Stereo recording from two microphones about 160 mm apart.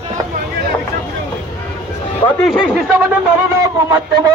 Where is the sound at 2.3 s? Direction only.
Centre (ahead or behind).